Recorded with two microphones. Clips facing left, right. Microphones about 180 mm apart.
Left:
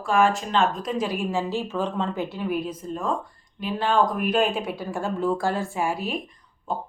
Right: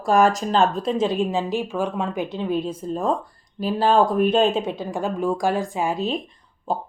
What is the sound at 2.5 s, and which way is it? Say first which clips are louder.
A woman's voice: right 4 dB; 25° right (ahead or behind).